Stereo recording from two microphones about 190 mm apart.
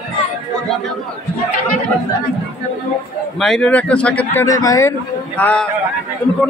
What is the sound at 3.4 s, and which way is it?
A man's voice, 5° left (ahead or behind).